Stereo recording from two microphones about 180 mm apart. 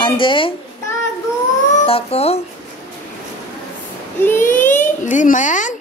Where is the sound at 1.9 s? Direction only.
35° left (ahead or behind).